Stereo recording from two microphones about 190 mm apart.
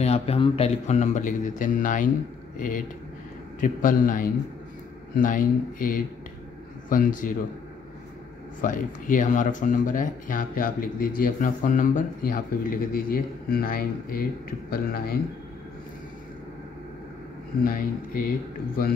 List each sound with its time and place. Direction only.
0.0 s speech: 35° left (ahead or behind)
3.6 s speech: 45° left (ahead or behind)
8.5 s speech: 45° left (ahead or behind)
17.6 s speech: 50° left (ahead or behind)